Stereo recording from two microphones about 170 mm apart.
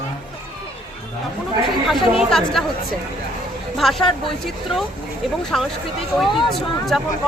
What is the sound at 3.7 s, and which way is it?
Speech, centre (ahead or behind).